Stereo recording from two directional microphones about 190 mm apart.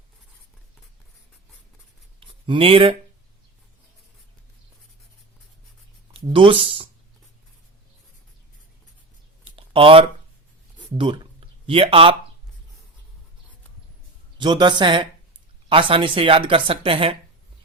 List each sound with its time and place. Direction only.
2.2 s speech: 30° right (ahead or behind)
6.1 s speech: 25° right (ahead or behind)
9.4 s a sound: 30° right (ahead or behind)
10.9 s speech: 25° right (ahead or behind)
14.3 s speech: 25° right (ahead or behind)